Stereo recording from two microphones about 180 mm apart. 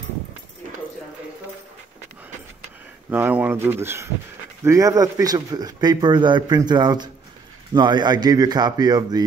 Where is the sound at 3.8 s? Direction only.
15° right (ahead or behind).